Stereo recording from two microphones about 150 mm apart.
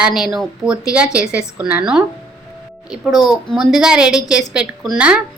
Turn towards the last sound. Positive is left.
turn(degrees=-10)  # may be behind; listen again after turning